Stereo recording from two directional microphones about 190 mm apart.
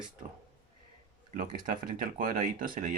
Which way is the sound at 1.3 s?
45° right (ahead or behind).